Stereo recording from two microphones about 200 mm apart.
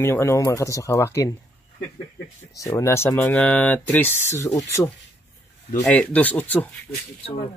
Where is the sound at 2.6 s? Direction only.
15° left (ahead or behind).